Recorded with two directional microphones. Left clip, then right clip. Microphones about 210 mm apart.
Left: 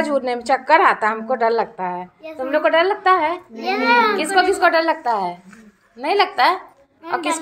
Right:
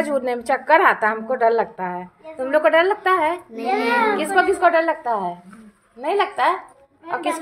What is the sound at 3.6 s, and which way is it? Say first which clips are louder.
Speech: left 3 dB; 50° left (ahead or behind).